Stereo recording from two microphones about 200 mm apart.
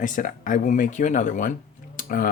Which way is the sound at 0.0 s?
40° left (ahead or behind).